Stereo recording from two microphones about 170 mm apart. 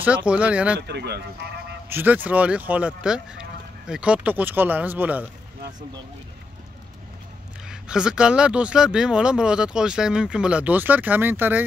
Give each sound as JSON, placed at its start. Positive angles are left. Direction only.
{"t": 0.0, "sound": "speech", "side_deg": -5}
{"t": 0.7, "sound": "speech", "side_deg": -75}
{"t": 1.9, "sound": "speech", "side_deg": -10}
{"t": 7.6, "sound": "speech", "side_deg": -5}